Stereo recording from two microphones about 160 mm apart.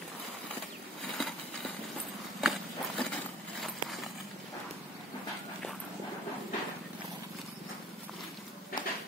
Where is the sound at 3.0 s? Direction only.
5° left (ahead or behind).